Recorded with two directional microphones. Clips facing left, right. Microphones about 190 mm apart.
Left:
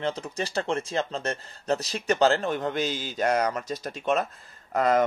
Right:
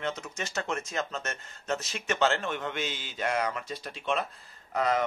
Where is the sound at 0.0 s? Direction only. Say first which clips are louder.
Left 5 dB; 35° left (ahead or behind).